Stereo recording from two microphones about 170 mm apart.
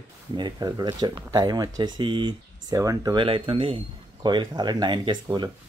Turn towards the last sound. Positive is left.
turn(degrees=-25)  # may be behind; listen again after turning